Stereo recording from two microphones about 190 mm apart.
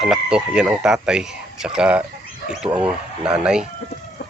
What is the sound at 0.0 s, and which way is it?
Speech, 5° right (ahead or behind).